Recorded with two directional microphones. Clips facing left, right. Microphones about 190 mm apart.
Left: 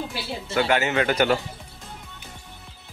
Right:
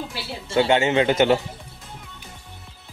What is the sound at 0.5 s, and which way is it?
Speech, 25° right (ahead or behind).